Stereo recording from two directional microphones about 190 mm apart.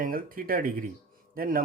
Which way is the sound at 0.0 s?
50° right (ahead or behind).